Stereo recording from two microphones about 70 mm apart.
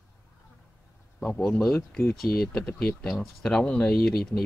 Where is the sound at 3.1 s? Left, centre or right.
Centre.